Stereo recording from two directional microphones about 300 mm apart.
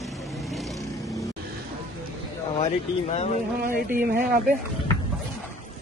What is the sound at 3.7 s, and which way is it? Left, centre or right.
Speech, right.